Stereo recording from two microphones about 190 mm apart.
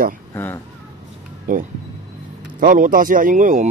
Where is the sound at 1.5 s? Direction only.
45° right (ahead or behind).